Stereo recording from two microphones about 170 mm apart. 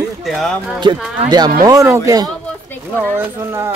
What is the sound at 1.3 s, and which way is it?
Speech, 25° right (ahead or behind).